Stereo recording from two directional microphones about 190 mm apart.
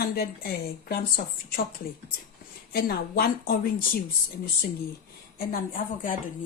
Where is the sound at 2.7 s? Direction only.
50° left (ahead or behind).